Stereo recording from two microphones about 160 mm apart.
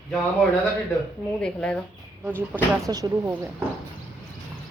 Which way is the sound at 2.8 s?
20° right (ahead or behind).